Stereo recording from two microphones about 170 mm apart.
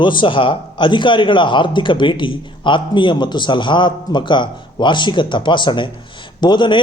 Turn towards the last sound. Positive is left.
turn(degrees=30)  # may be behind; listen again after turning